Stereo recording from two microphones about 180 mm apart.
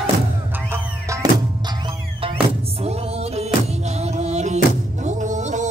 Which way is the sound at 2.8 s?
35° right (ahead or behind).